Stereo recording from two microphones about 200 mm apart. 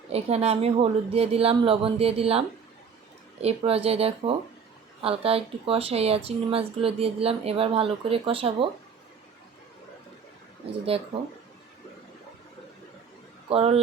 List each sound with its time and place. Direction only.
0.1 s speech: 30° right (ahead or behind)
3.4 s speech: 30° right (ahead or behind)
10.9 s speech: 30° right (ahead or behind)
13.5 s speech: 30° right (ahead or behind)